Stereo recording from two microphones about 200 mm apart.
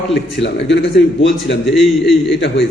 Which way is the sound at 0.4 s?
60° left (ahead or behind).